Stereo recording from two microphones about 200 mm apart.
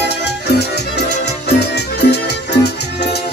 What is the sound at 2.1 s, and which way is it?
Music, 55° left (ahead or behind).